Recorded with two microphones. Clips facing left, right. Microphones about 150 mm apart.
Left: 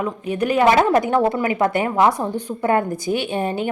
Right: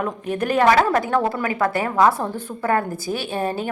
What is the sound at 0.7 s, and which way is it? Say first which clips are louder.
A woman's voice: left 2 dB; 20° left (ahead or behind).